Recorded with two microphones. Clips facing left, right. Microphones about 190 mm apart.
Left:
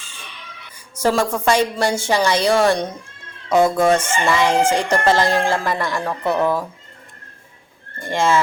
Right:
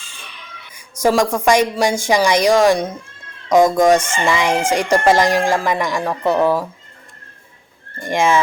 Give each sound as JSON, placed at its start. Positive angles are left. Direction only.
{"t": 1.0, "sound": "speech", "side_deg": -10}
{"t": 8.0, "sound": "speech", "side_deg": -15}